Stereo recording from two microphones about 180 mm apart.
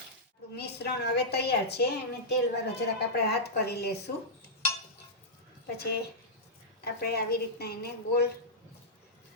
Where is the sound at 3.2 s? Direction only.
65° left (ahead or behind).